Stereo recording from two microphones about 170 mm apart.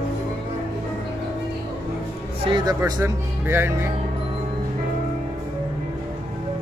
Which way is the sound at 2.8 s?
15° right (ahead or behind).